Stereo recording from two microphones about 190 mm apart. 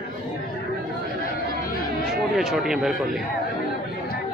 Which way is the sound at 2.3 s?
Centre (ahead or behind).